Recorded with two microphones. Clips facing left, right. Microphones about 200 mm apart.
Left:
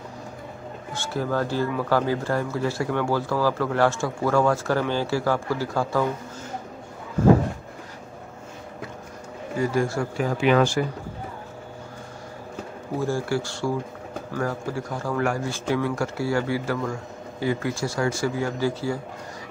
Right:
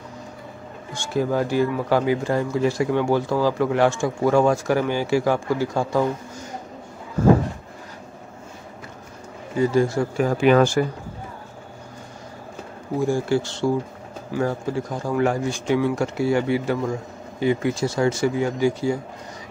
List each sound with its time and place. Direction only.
1.0 s speech: 15° right (ahead or behind)
9.6 s a man's voice: 20° right (ahead or behind)
10.1 s speech: 45° right (ahead or behind)
13.0 s a man's voice: 20° right (ahead or behind)